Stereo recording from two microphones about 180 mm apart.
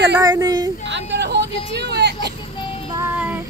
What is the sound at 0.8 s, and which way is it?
Speech, 80° right.